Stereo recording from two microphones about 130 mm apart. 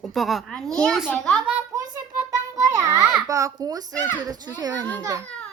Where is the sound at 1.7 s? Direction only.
30° right (ahead or behind).